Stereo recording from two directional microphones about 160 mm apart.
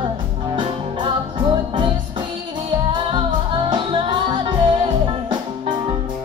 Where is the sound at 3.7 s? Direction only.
30° right (ahead or behind).